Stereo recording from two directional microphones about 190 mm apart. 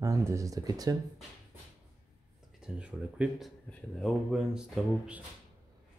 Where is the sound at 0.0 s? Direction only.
15° right (ahead or behind).